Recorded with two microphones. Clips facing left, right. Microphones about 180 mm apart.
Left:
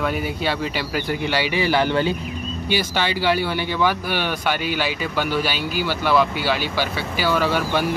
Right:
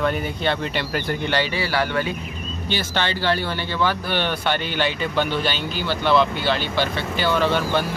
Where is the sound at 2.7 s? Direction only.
10° left (ahead or behind).